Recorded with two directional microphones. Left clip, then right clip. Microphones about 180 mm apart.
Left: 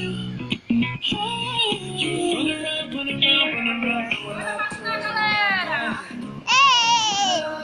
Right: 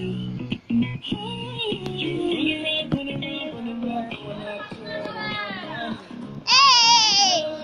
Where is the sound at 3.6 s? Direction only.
15° right (ahead or behind).